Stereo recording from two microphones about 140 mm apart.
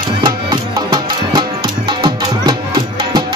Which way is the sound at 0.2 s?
35° right (ahead or behind).